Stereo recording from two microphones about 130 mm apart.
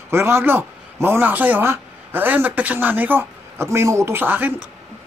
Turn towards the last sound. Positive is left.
turn(degrees=-15)  # may be behind; listen again after turning